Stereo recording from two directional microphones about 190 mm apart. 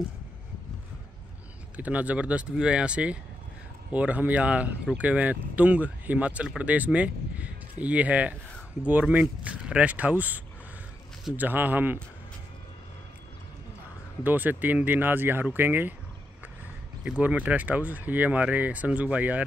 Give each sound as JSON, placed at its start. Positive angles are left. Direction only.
{"t": 1.8, "sound": "speech", "side_deg": -10}
{"t": 14.2, "sound": "speech", "side_deg": -10}
{"t": 17.2, "sound": "speech", "side_deg": -5}